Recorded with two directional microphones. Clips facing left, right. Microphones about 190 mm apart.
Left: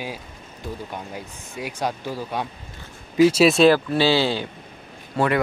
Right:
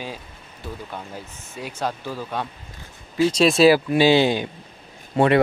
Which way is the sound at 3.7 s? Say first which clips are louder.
Right 3 dB; 15° right (ahead or behind).